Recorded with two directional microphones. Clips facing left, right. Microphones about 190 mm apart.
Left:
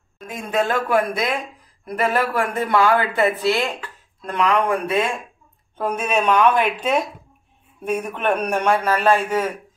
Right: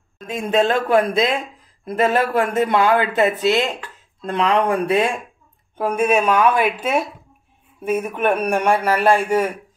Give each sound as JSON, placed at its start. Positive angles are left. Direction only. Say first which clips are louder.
{"t": 0.3, "sound": "speech", "louder": "right 4 dB", "side_deg": -25}
{"t": 5.8, "sound": "a man's voice", "louder": "right 4 dB", "side_deg": -10}